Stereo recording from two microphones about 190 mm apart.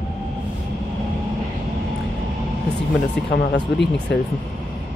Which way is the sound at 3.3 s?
65° left (ahead or behind).